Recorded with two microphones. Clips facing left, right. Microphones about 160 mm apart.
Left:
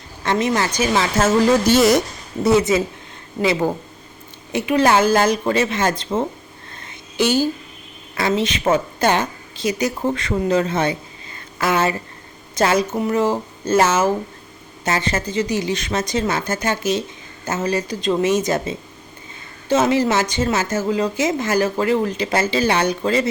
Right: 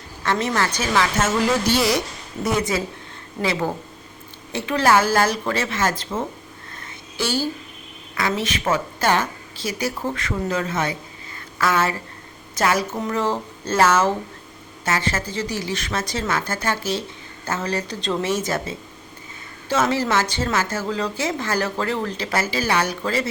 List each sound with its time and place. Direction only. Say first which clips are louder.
0.2 s speech: left 3 dB; 15° left (ahead or behind)
1.2 s speech: left 5 dB; 45° left (ahead or behind)
2.4 s a woman's voice: left 7 dB; 25° left (ahead or behind)